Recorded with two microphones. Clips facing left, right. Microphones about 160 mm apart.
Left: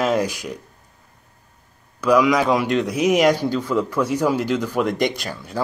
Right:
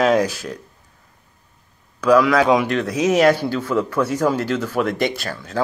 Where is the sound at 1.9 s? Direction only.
15° left (ahead or behind).